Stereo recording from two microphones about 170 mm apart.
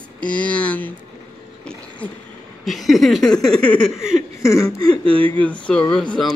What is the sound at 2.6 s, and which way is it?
A woman's voice, centre (ahead or behind).